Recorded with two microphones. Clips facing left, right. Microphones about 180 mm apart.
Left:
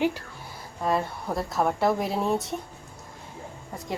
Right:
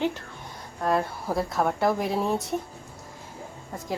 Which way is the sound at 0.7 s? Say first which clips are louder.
Right 1 dB; centre (ahead or behind).